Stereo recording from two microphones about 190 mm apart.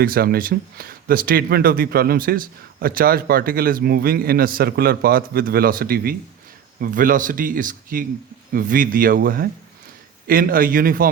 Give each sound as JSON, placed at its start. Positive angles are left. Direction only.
{"t": 0.0, "sound": "speech", "side_deg": -50}